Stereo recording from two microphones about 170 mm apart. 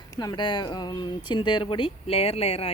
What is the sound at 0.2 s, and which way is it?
Speech, 25° left (ahead or behind).